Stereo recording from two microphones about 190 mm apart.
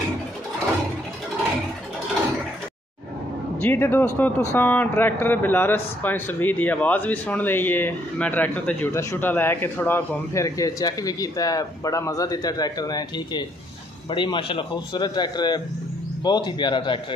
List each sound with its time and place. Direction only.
3.6 s speech: 10° left (ahead or behind)